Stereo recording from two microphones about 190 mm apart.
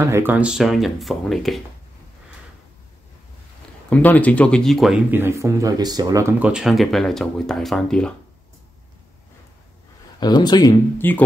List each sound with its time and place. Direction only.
0.0 s speech: 15° right (ahead or behind)
3.9 s speech: 10° left (ahead or behind)
5.1 s speech: 15° right (ahead or behind); by 8.1 s 5° left (ahead or behind)
10.2 s speech: 20° left (ahead or behind)